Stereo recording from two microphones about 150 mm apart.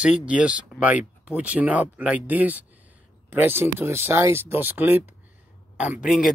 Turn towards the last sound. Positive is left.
turn(degrees=-10)  # may be behind; listen again after turning